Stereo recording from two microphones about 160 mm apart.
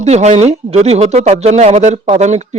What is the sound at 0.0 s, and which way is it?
Speech, 45° right (ahead or behind).